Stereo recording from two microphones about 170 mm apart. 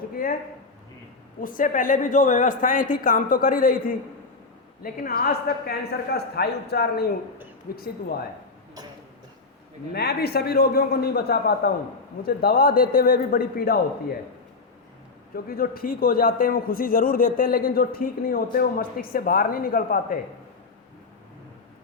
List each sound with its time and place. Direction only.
1.4 s a man's voice: 55° left (ahead or behind)
6.1 s a man's voice: 70° left (ahead or behind)
9.9 s a man's voice: 70° left (ahead or behind)
15.4 s a man's voice: 60° left (ahead or behind)